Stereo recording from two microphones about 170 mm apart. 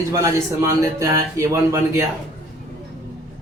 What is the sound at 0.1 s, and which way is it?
A man's voice, 20° right (ahead or behind).